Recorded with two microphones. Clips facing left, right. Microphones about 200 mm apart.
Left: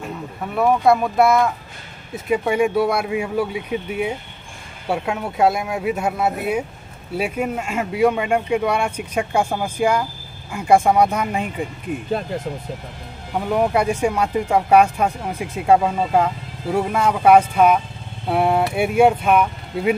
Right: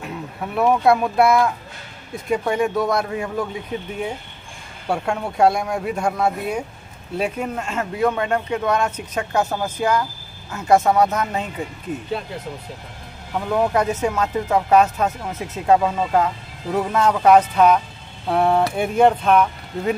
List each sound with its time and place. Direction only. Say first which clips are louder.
0.0 s speech: left 1 dB; centre (ahead or behind)
13.3 s speech: left 1 dB; 15° left (ahead or behind)